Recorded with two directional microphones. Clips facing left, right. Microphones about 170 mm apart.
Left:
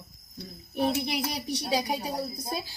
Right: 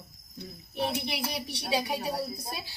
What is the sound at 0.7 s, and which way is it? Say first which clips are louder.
Speech: left 4 dB; 45° left (ahead or behind).